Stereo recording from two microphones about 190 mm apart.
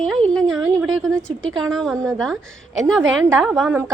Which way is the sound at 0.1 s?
Centre (ahead or behind).